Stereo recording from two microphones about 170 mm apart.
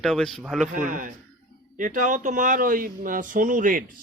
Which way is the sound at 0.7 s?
50° right (ahead or behind).